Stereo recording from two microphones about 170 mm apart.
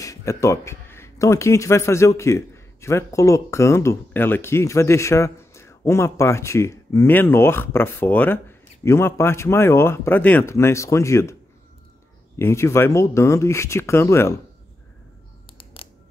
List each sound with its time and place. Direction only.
0.0 s speech: 20° left (ahead or behind)
12.4 s speech: 15° left (ahead or behind)
15.5 s music: 35° left (ahead or behind)